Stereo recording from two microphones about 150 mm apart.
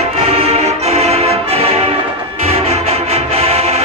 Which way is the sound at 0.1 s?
45° right (ahead or behind).